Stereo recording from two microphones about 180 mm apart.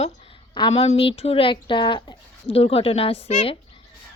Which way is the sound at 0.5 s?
30° left (ahead or behind).